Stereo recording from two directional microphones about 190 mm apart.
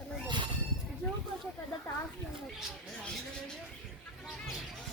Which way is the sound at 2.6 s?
Centre (ahead or behind).